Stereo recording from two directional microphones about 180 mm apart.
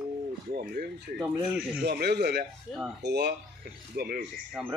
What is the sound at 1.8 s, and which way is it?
A man's voice, 65° right (ahead or behind).